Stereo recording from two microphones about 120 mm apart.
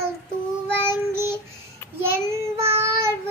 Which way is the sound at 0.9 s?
20° right (ahead or behind).